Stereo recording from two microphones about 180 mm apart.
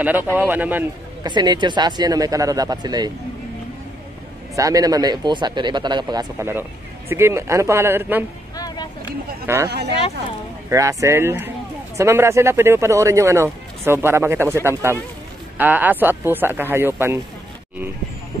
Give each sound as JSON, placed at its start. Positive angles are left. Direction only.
{"t": 0.0, "sound": "speech", "side_deg": -10}
{"t": 1.2, "sound": "a man's voice", "side_deg": -25}
{"t": 4.6, "sound": "a man's voice", "side_deg": -20}
{"t": 8.5, "sound": "a sound", "side_deg": 20}
{"t": 9.5, "sound": "speech", "side_deg": -15}
{"t": 10.7, "sound": "speech", "side_deg": -15}